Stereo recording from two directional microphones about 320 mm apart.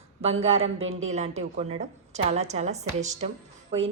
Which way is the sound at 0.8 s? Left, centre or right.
Right.